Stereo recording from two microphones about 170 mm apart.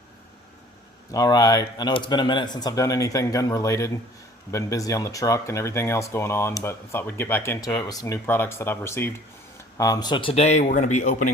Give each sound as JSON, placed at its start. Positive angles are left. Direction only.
{"t": 1.1, "sound": "a man's voice", "side_deg": 20}